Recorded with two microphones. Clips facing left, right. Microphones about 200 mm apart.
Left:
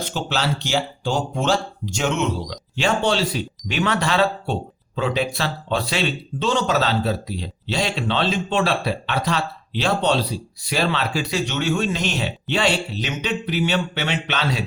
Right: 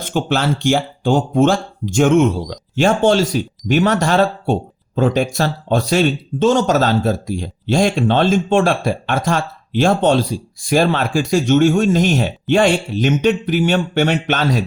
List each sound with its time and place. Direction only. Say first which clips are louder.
0.0 s speech: right 6 dB; 50° right (ahead or behind)